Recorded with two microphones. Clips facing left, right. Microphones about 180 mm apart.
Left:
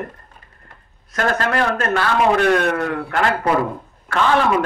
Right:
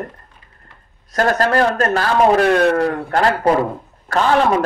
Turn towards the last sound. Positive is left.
turn(degrees=-35)  # may be behind; listen again after turning